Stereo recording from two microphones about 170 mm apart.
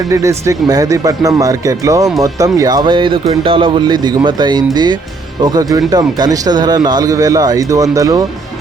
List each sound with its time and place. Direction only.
0.1 s speech: 20° right (ahead or behind)